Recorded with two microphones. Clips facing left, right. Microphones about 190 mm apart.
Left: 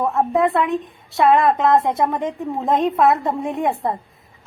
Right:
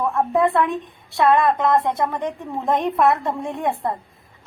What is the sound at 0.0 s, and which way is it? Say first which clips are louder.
A woman's voice: left 1 dB; 25° left (ahead or behind).